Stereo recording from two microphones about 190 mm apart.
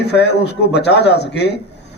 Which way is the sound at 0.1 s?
65° left (ahead or behind).